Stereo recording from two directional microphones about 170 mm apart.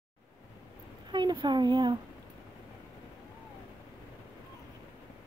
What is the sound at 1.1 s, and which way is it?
Speech, 25° right (ahead or behind).